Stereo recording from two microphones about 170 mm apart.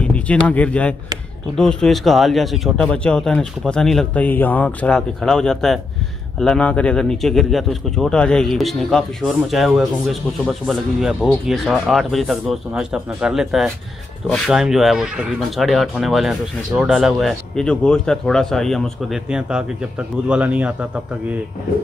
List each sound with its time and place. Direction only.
0.0 s a man's voice: 5° left (ahead or behind)